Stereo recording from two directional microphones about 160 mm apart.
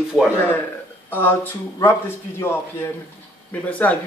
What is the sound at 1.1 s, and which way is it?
Speech, 10° left (ahead or behind).